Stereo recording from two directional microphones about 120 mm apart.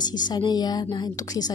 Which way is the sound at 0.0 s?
35° left (ahead or behind).